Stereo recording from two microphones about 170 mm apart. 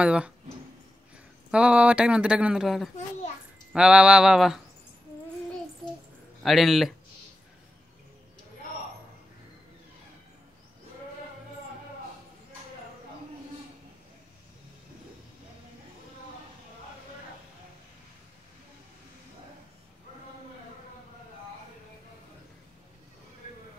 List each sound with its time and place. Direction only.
0.0 s speech: 5° right (ahead or behind)
1.5 s speech: 5° right (ahead or behind)
6.4 s speech: centre (ahead or behind)